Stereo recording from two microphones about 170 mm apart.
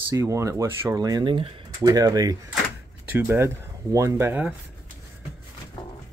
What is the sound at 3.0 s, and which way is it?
Speech, 10° right (ahead or behind).